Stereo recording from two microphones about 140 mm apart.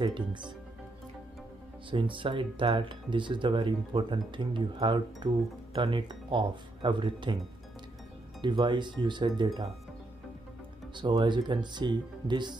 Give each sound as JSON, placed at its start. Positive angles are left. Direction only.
{"t": 0.0, "sound": "speech", "side_deg": -35}
{"t": 1.9, "sound": "speech", "side_deg": -35}
{"t": 8.4, "sound": "speech", "side_deg": -35}
{"t": 11.0, "sound": "speech", "side_deg": -35}